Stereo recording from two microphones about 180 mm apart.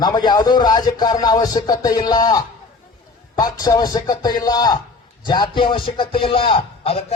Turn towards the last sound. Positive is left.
turn(degrees=30)  # may be behind; listen again after turning